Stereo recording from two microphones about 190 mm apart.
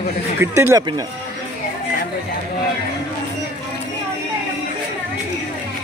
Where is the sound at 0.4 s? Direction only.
15° right (ahead or behind).